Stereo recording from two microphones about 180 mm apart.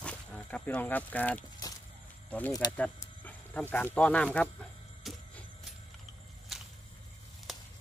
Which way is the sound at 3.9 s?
5° left (ahead or behind).